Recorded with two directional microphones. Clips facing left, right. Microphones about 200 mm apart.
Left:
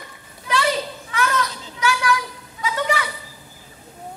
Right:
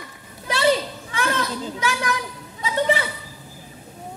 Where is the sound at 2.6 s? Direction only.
35° right (ahead or behind).